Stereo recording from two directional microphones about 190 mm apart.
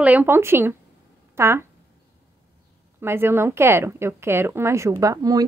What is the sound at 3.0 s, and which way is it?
A woman's voice, 10° right (ahead or behind).